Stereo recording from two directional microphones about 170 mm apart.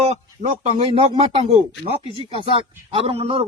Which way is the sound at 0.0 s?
40° right (ahead or behind).